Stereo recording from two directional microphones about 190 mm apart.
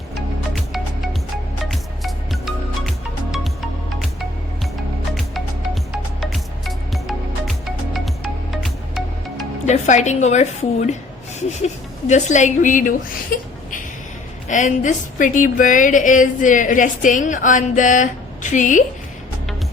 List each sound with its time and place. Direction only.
0.5 s music: centre (ahead or behind)
5.9 s music: centre (ahead or behind)
9.6 s speech: 40° left (ahead or behind)
14.4 s a woman's voice: 40° left (ahead or behind)